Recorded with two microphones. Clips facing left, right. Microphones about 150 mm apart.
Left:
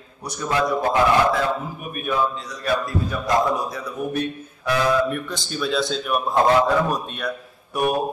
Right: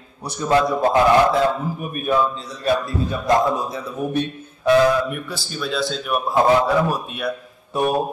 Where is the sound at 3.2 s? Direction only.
25° right (ahead or behind).